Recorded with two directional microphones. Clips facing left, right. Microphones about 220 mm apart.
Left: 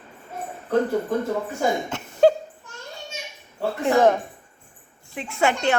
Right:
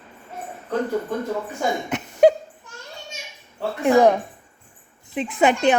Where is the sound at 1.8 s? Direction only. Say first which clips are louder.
Right 3 dB; 20° right (ahead or behind).